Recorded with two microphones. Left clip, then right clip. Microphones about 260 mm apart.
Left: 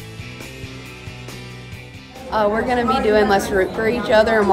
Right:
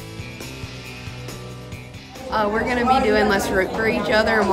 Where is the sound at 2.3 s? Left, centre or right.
Centre.